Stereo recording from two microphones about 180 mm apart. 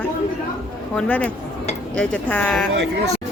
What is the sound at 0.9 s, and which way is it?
Speech, 5° left (ahead or behind).